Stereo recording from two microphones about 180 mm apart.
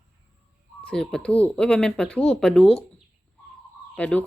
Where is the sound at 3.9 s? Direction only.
10° left (ahead or behind).